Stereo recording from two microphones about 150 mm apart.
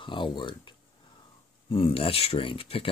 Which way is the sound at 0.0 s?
35° left (ahead or behind).